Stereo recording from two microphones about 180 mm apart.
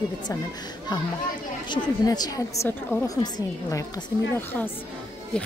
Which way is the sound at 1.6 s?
25° left (ahead or behind).